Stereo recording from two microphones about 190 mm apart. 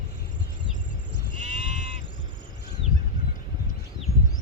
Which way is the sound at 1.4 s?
40° right (ahead or behind).